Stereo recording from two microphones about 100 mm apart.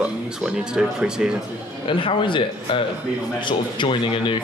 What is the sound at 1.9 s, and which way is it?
A man's voice, 60° left (ahead or behind).